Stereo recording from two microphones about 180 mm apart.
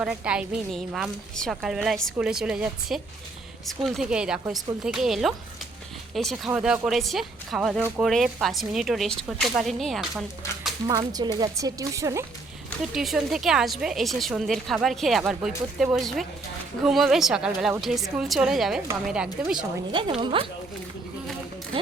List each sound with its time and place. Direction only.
0.0 s a woman's voice: 5° right (ahead or behind)
10.8 s speech: 20° right (ahead or behind)
12.9 s a woman's voice: centre (ahead or behind)
19.9 s speech: 25° right (ahead or behind)